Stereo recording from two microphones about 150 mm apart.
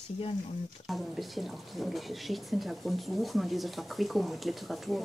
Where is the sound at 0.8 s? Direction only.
Centre (ahead or behind).